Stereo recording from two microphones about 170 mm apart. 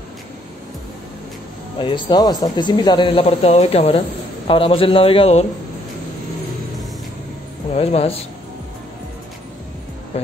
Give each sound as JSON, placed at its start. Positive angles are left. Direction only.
{"t": 1.8, "sound": "a man's voice", "side_deg": 30}
{"t": 7.7, "sound": "a man's voice", "side_deg": 35}
{"t": 10.1, "sound": "speech", "side_deg": 35}